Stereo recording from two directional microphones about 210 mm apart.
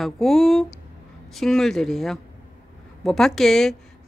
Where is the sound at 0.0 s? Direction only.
Centre (ahead or behind).